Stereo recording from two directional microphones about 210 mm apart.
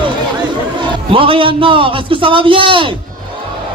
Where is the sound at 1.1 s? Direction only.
25° right (ahead or behind).